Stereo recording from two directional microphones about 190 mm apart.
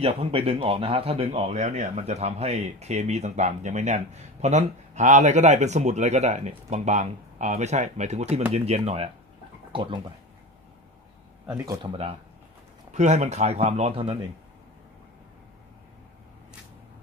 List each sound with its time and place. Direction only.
0.0 s speech: 30° right (ahead or behind)
11.6 s speech: 25° right (ahead or behind)